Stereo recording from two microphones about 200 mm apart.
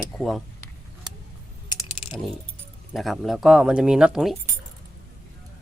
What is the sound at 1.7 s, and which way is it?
Typing, 25° left (ahead or behind).